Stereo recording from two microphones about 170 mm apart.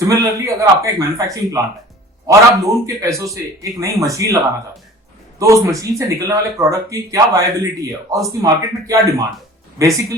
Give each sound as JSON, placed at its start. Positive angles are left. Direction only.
{"t": 0.0, "sound": "speech", "side_deg": -20}
{"t": 5.4, "sound": "speech", "side_deg": -20}